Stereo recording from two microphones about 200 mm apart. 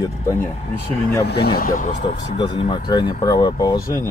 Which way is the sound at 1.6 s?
40° left (ahead or behind).